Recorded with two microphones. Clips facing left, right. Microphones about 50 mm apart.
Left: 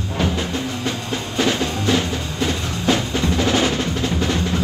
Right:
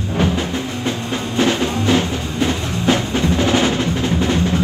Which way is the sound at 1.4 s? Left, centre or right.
Right.